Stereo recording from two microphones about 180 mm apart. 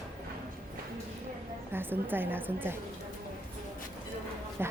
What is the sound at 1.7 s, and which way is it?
A woman's voice, 10° right (ahead or behind).